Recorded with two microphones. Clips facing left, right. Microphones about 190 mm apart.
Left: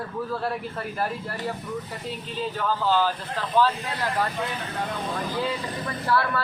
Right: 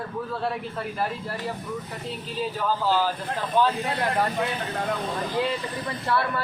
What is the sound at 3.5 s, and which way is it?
Speech, 25° right (ahead or behind).